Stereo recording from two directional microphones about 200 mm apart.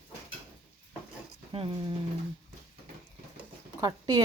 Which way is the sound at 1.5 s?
25° right (ahead or behind).